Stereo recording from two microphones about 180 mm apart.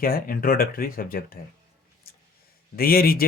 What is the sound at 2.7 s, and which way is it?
Speech, 55° left (ahead or behind).